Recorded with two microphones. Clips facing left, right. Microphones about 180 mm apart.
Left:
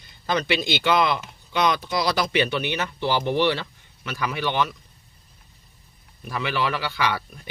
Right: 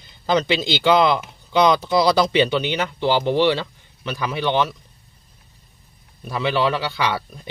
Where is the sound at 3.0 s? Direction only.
20° right (ahead or behind).